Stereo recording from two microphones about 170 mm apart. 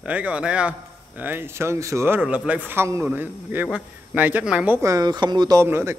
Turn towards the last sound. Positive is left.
turn(degrees=-15)  # may be behind; listen again after turning